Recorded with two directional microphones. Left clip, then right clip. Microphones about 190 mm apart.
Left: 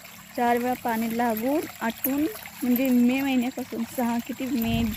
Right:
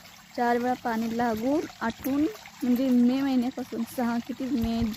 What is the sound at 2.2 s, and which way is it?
Speech, 50° left (ahead or behind).